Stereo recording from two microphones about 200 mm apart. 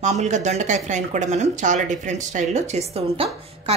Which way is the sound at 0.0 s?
35° right (ahead or behind).